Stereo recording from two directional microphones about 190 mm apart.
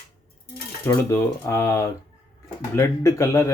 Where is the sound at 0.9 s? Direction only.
15° left (ahead or behind).